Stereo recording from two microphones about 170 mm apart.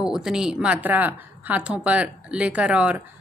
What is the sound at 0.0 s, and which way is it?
Speech, 5° right (ahead or behind).